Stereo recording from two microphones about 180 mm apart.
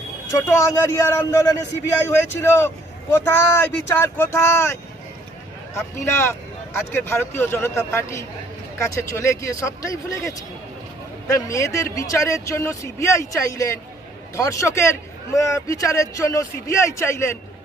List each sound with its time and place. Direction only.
0.3 s a man's voice: 15° left (ahead or behind)